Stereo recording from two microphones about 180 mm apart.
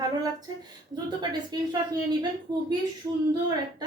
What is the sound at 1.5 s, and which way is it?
Speech, 25° right (ahead or behind).